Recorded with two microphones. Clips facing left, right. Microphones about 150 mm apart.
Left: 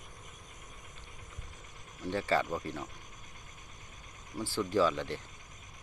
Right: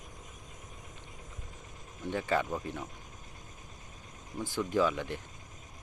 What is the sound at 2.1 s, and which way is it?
Speech, 15° right (ahead or behind).